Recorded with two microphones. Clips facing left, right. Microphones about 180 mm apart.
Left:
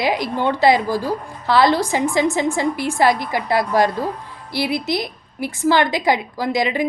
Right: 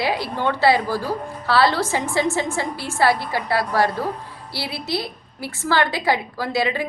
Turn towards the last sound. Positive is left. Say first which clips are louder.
# left 2 dB
turn(degrees=15)  # may be behind; listen again after turning